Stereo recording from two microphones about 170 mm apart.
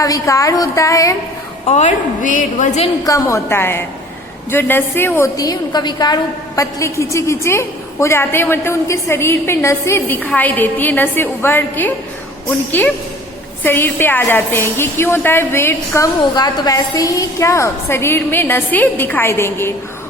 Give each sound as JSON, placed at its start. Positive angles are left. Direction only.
{"t": 0.0, "sound": "a woman's voice", "side_deg": 20}
{"t": 1.6, "sound": "a woman's voice", "side_deg": 45}
{"t": 3.0, "sound": "a woman's voice", "side_deg": 20}
{"t": 13.6, "sound": "a woman's voice", "side_deg": 10}